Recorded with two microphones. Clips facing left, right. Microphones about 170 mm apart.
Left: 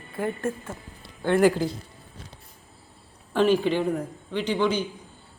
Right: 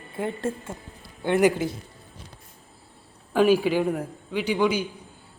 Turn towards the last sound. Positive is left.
turn(degrees=-10)  # may be behind; listen again after turning